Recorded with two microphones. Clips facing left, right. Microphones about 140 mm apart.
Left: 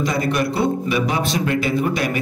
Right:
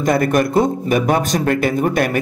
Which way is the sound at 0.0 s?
55° right (ahead or behind).